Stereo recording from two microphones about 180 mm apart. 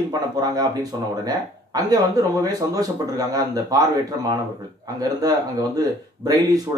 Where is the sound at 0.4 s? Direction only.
20° right (ahead or behind).